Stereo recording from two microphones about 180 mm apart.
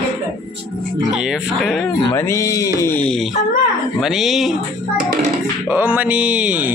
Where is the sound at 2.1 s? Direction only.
15° left (ahead or behind).